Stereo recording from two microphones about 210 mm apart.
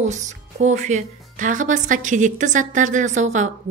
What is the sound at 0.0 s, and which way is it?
A woman's voice, 35° right (ahead or behind).